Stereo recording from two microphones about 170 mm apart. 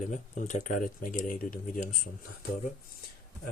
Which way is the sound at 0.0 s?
45° left (ahead or behind).